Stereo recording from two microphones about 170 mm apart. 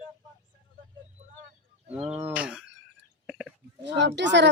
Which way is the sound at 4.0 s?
90° right.